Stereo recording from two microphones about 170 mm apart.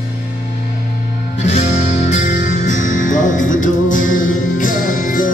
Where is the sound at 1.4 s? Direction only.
40° left (ahead or behind).